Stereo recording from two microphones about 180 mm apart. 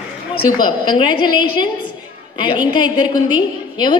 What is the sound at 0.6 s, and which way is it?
Speech, 25° left (ahead or behind).